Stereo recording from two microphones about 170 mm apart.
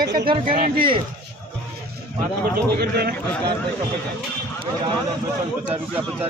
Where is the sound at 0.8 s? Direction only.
30° right (ahead or behind).